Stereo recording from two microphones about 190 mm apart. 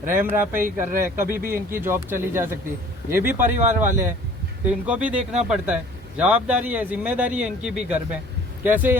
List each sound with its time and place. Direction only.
0.2 s speech: 10° right (ahead or behind)
0.5 s speech: 45° right (ahead or behind)
1.5 s speech: 10° right (ahead or behind)